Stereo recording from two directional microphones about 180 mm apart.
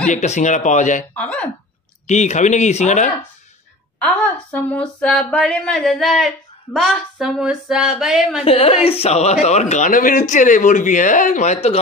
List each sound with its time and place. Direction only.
0.1 s speech: 40° left (ahead or behind)
1.1 s speech: 5° left (ahead or behind)
2.0 s speech: 40° left (ahead or behind)
4.0 s speech: 10° left (ahead or behind)
8.5 s speech: 35° left (ahead or behind)